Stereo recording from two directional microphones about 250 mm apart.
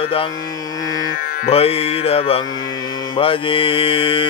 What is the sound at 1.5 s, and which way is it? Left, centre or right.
Mantra, left.